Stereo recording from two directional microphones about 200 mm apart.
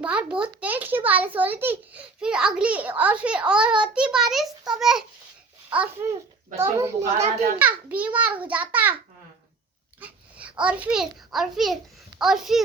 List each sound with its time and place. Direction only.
0.0 s a child's voice: 5° right (ahead or behind)
7.0 s a child's voice: 35° right (ahead or behind)
7.6 s a child's voice: 5° right (ahead or behind)
10.0 s a child's voice: 5° right (ahead or behind)